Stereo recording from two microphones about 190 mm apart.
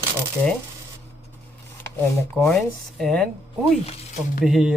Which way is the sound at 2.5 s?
Centre (ahead or behind).